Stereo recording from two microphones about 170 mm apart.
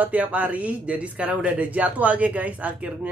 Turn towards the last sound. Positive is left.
turn(degrees=-10)  # may be behind; listen again after turning